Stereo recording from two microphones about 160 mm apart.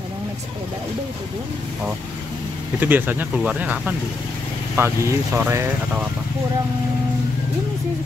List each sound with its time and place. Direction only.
2.8 s speech: 10° right (ahead or behind)